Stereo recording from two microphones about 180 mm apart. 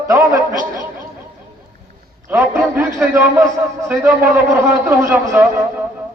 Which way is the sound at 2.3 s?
10° right (ahead or behind).